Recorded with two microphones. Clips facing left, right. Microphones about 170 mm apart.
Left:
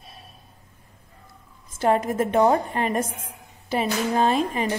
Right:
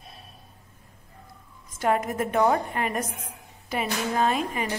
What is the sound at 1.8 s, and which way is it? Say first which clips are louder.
A woman's voice: left 4 dB; 30° left (ahead or behind).